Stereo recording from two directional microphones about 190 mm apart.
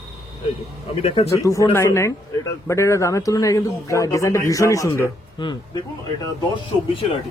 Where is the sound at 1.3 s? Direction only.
15° left (ahead or behind).